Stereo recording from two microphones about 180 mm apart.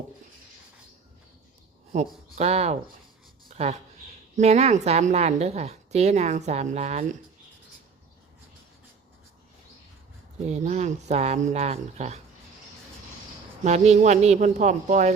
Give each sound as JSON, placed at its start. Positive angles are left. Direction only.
{"t": 1.9, "sound": "a woman's voice", "side_deg": -40}
{"t": 3.5, "sound": "a sound", "side_deg": -40}
{"t": 4.4, "sound": "a woman's voice", "side_deg": -35}
{"t": 10.4, "sound": "a woman's voice", "side_deg": -40}
{"t": 13.7, "sound": "a woman's voice", "side_deg": -40}